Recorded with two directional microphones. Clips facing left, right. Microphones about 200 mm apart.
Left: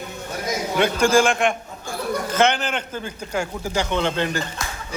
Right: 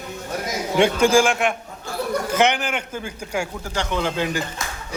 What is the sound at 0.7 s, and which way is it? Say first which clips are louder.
Speech: right 3 dB; 25° right (ahead or behind).